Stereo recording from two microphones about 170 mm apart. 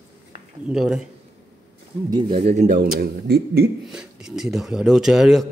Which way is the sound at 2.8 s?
60° right (ahead or behind).